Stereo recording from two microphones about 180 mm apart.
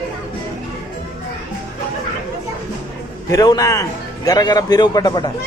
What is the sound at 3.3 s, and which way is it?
Speech, 20° left (ahead or behind).